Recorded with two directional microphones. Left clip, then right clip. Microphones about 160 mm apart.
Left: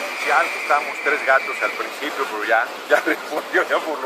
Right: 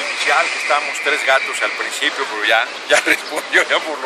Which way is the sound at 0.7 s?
30° right (ahead or behind).